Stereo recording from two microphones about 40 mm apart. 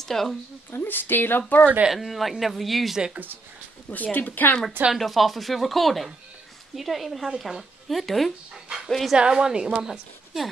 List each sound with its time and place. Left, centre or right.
0.0 s a woman's voice: centre
0.7 s a woman's voice: left
1.9 s speech: centre
3.9 s speech: left
4.9 s speech: centre
9.1 s a woman's voice: right
9.8 s a woman's voice: centre